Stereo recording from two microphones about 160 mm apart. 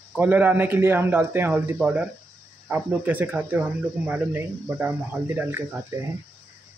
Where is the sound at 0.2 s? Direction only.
10° right (ahead or behind).